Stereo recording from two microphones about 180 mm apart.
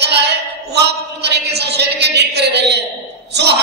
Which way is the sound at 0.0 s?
70° right (ahead or behind).